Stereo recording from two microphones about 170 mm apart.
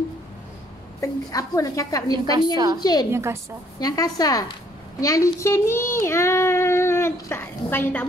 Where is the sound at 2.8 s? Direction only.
25° left (ahead or behind).